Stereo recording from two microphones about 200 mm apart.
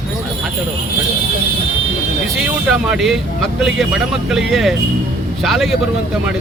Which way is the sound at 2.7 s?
Centre (ahead or behind).